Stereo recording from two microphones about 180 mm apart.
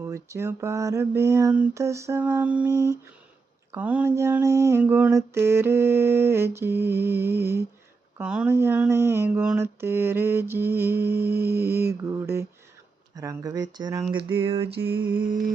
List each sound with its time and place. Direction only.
0.0 s mantra: 15° right (ahead or behind)
13.1 s speech: 20° right (ahead or behind)
14.8 s mantra: 10° right (ahead or behind)